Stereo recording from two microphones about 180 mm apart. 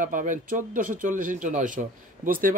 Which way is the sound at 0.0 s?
45° right (ahead or behind).